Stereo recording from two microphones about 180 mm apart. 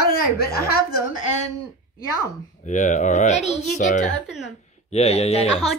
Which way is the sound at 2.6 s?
45° left (ahead or behind).